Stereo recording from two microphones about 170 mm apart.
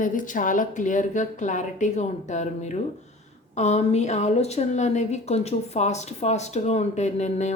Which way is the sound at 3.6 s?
40° left (ahead or behind).